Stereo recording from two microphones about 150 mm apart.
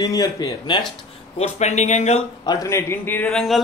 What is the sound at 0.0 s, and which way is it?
Speech, 25° left (ahead or behind).